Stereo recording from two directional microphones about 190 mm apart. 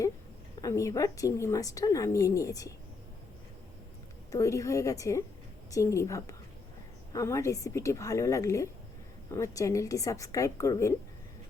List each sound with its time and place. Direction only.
0.6 s a woman's voice: 15° left (ahead or behind)
4.3 s a woman's voice: 15° left (ahead or behind)